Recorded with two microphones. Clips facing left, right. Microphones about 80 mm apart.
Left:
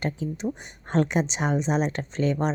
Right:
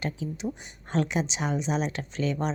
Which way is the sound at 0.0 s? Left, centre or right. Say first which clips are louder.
Left 3 dB; left.